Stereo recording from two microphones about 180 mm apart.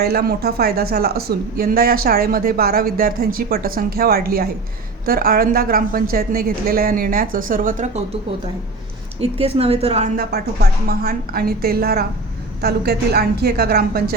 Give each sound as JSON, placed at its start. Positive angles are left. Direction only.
{"t": 0.0, "sound": "a woman's voice", "side_deg": -60}
{"t": 9.4, "sound": "a woman's voice", "side_deg": -35}
{"t": 10.2, "sound": "speech", "side_deg": -60}